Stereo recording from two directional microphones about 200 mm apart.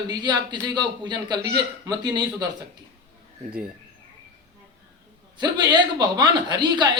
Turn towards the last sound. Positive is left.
turn(degrees=-20)  # may be behind; listen again after turning